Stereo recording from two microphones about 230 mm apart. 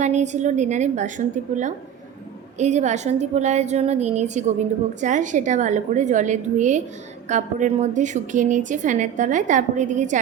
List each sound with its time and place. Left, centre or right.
0.0 s a woman's voice: right